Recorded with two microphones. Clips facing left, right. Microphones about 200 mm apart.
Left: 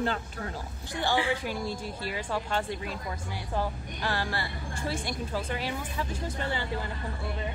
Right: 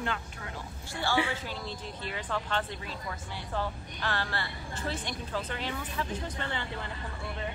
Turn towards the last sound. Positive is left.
turn(degrees=10)  # may be behind; listen again after turning